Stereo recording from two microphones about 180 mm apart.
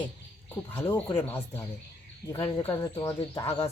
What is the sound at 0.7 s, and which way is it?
Speech, 10° left (ahead or behind).